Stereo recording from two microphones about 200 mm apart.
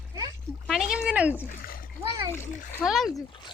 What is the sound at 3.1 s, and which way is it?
Speech, 15° left (ahead or behind).